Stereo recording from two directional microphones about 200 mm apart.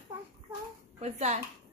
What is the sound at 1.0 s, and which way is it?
Speech, 35° right (ahead or behind).